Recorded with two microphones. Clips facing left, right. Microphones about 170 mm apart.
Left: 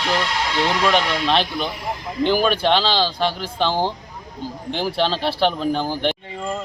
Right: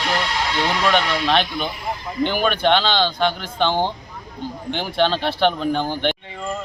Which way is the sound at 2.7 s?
Centre (ahead or behind).